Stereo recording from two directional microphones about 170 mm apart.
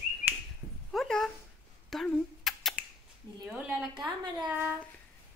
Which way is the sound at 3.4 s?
10° right (ahead or behind).